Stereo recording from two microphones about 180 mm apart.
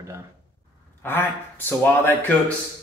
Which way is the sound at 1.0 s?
10° left (ahead or behind).